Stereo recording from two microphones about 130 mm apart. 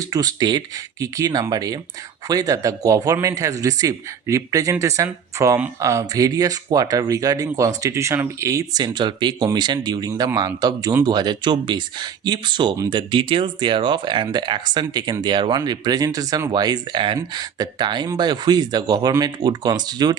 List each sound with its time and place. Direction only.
0.0 s speech: 30° right (ahead or behind)